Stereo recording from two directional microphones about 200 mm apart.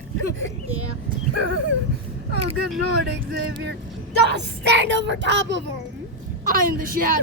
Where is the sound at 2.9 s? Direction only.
55° right (ahead or behind).